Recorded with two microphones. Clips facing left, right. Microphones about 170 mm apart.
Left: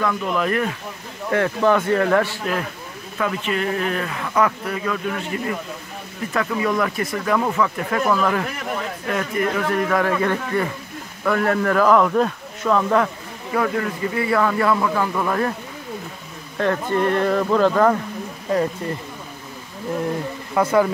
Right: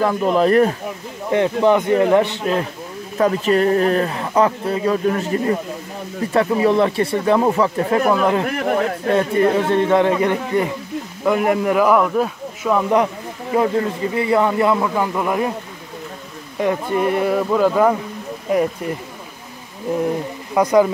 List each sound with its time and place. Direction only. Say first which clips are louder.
0.0 s speech: right 6 dB; 35° right (ahead or behind)
1.3 s speech: right 3 dB; 20° right (ahead or behind)
3.2 s speech: right 7 dB; 40° right (ahead or behind)
8.5 s a sound: right 8 dB; 55° right (ahead or behind)
9.0 s a man's voice: right 6 dB; 30° right (ahead or behind); by 15.5 s 15° right (ahead or behind)
16.5 s a man's voice: right 1 dB; 10° right (ahead or behind)
19.9 s a man's voice: right 4 dB; 15° right (ahead or behind)